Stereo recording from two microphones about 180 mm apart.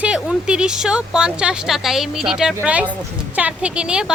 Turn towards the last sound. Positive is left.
turn(degrees=-5)  # may be behind; listen again after turning